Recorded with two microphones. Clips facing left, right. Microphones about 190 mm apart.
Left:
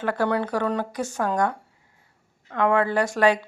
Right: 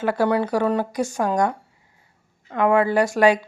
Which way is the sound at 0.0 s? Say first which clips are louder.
Right 3 dB; 10° right (ahead or behind).